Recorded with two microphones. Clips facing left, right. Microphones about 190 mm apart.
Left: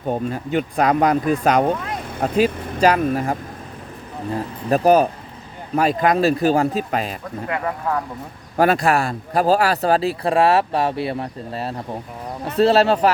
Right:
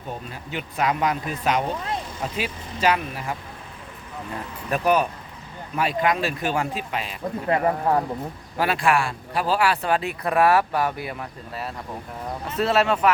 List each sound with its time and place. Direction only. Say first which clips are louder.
0.1 s speech: left 11 dB; 45° left (ahead or behind)
2.1 s speech: left 11 dB; 55° left (ahead or behind)
7.4 s speech: right 3 dB; 35° right (ahead or behind)
8.5 s speech: left 5 dB; 45° left (ahead or behind)